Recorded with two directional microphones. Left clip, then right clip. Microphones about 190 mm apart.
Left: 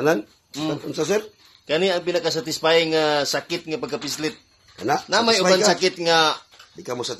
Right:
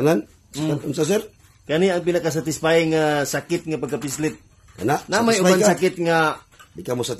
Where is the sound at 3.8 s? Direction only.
Centre (ahead or behind).